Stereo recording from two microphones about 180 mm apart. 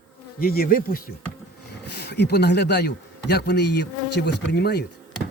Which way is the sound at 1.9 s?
65° left (ahead or behind).